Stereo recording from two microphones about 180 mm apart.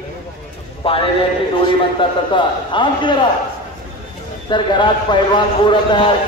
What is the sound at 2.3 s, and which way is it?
Speech, 25° left (ahead or behind).